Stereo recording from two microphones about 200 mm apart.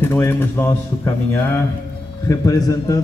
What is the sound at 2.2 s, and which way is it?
Speech, 15° left (ahead or behind).